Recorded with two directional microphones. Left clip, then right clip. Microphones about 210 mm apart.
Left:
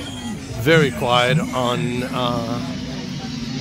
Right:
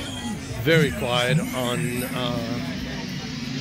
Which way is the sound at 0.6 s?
5° left (ahead or behind).